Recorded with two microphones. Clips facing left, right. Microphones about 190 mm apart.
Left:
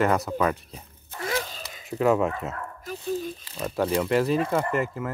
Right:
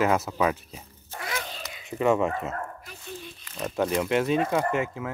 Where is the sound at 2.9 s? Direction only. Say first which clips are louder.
Left 11 dB; 40° left (ahead or behind).